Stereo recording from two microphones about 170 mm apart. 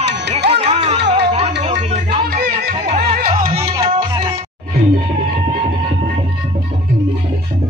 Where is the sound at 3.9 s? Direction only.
30° right (ahead or behind).